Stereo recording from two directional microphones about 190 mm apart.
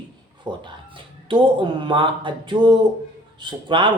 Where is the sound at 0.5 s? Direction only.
25° right (ahead or behind).